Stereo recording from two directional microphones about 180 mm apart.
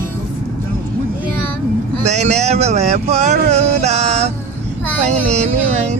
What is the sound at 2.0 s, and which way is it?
Speech, 40° right (ahead or behind).